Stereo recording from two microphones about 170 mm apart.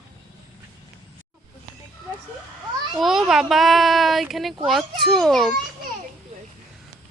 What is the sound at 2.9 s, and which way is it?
Speech, centre (ahead or behind).